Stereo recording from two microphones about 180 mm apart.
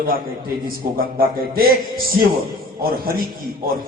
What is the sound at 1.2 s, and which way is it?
Speech, 55° right (ahead or behind).